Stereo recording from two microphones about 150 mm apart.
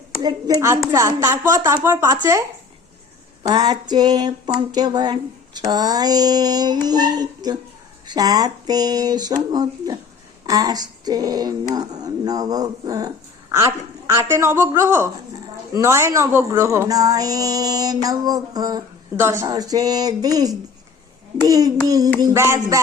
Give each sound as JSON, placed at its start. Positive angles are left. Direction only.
{"t": 0.2, "sound": "a woman's voice", "side_deg": -25}
{"t": 3.4, "sound": "speech", "side_deg": -25}